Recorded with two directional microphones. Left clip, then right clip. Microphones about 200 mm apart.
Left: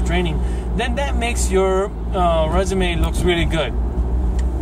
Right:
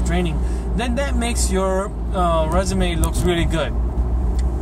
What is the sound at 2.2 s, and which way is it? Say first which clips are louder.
Speech: left 1 dB; 20° right (ahead or behind).